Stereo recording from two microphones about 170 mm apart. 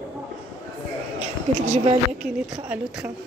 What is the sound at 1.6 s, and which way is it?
Speech, 40° right (ahead or behind).